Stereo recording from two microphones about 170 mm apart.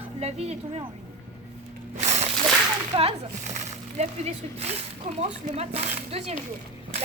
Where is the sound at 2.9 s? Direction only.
30° right (ahead or behind).